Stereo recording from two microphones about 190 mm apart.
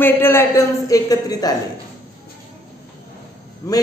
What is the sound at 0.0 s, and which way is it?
Speech, 10° left (ahead or behind).